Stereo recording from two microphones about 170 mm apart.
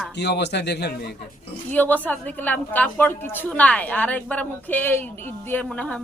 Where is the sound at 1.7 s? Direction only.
10° left (ahead or behind).